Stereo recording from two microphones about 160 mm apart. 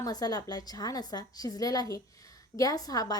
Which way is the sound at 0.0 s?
25° left (ahead or behind).